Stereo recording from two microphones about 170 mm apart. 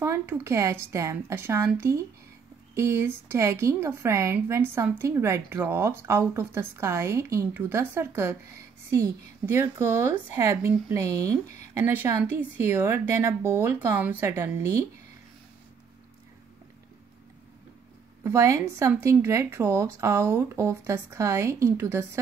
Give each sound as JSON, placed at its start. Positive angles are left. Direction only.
{"t": 0.0, "sound": "a woman's voice", "side_deg": -15}
{"t": 18.2, "sound": "a woman's voice", "side_deg": -15}